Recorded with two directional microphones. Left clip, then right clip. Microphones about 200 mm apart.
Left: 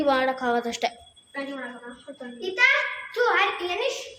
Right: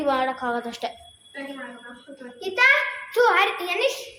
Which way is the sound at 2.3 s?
30° right (ahead or behind).